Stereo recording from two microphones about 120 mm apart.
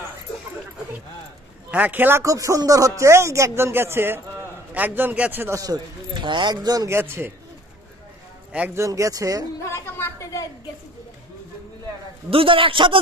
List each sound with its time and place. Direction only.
1.7 s a man's voice: 15° right (ahead or behind)
5.6 s speech: 35° right (ahead or behind)
6.9 s speech: 20° right (ahead or behind)
8.5 s a man's voice: 15° right (ahead or behind)
8.8 s speech: 25° right (ahead or behind)
9.6 s a woman's voice: 25° left (ahead or behind)
12.3 s a man's voice: 50° right (ahead or behind)